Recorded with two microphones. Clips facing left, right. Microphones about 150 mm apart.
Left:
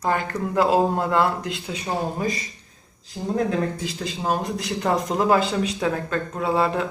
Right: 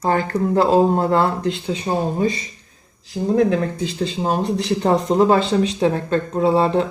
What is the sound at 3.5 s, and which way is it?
Speech, 25° right (ahead or behind).